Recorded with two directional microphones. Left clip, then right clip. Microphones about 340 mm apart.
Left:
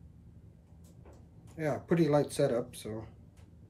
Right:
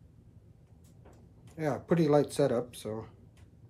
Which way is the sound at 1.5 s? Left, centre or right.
Centre.